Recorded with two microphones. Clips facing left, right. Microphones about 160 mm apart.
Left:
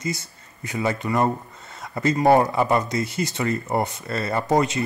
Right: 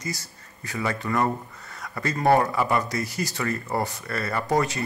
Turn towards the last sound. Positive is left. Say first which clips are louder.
# left 3 dB
turn(degrees=20)  # may be behind; listen again after turning